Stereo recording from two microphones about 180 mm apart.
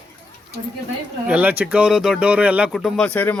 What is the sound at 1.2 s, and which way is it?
A child's voice, 5° right (ahead or behind).